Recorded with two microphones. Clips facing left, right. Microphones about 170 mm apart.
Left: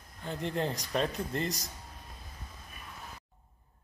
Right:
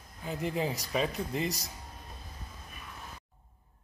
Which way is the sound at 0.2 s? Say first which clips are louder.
Right 1 dB; 5° right (ahead or behind).